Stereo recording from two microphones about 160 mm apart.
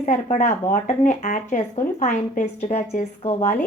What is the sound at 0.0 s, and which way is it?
Speech, 50° left (ahead or behind).